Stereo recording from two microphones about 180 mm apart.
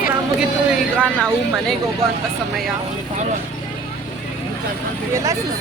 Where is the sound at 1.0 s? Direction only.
5° left (ahead or behind).